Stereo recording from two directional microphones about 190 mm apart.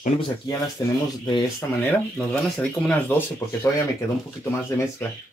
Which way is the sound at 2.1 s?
5° left (ahead or behind).